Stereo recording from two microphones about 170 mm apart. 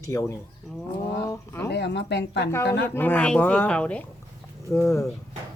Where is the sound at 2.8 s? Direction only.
10° left (ahead or behind).